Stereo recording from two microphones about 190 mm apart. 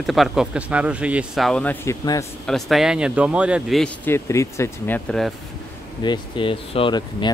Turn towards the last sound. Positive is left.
turn(degrees=25)  # may be behind; listen again after turning